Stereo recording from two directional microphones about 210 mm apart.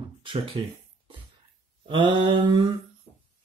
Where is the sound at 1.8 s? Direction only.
20° right (ahead or behind).